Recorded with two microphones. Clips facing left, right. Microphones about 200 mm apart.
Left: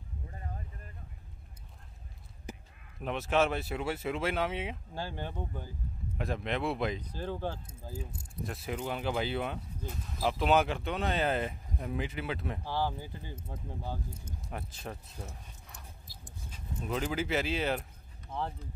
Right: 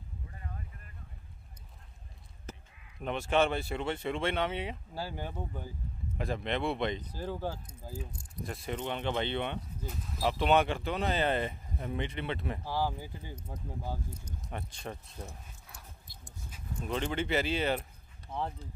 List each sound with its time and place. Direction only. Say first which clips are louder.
0.3 s boat: left 2 dB; 35° left (ahead or behind)
2.5 s a sound: left 2 dB; 15° left (ahead or behind)
3.0 s speech: even; centre (ahead or behind)
5.0 s speech: even; 10° right (ahead or behind)
7.1 s speech: even; 10° right (ahead or behind)
12.6 s speech: even; 10° right (ahead or behind)
14.5 s speech: right 1 dB; centre (ahead or behind)
16.4 s dog: even; 10° right (ahead or behind)
16.9 s speech: even; 5° left (ahead or behind)
18.3 s speech: even; 10° right (ahead or behind)